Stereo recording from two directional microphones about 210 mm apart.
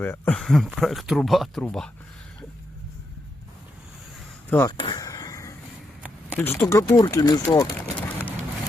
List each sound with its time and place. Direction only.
0.0 s speech: 5° left (ahead or behind)
4.4 s speech: 10° left (ahead or behind)
4.8 s a sound: 20° left (ahead or behind)
6.3 s speech: 10° left (ahead or behind)